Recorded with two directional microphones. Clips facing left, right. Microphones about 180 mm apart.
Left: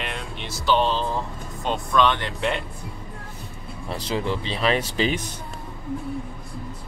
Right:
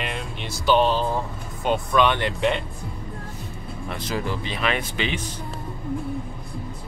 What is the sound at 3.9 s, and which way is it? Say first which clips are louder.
Speech: left 2 dB; 30° left (ahead or behind).